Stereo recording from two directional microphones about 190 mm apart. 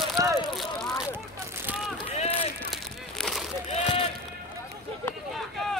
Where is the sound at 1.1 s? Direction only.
10° right (ahead or behind).